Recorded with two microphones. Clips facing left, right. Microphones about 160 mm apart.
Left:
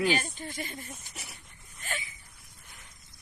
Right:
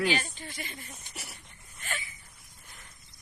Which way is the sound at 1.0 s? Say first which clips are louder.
Right 1 dB; centre (ahead or behind).